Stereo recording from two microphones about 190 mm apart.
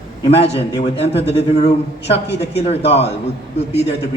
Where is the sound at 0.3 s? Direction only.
30° left (ahead or behind).